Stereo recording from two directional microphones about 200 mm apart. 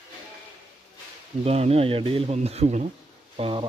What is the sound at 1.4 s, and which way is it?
Speech, 30° right (ahead or behind).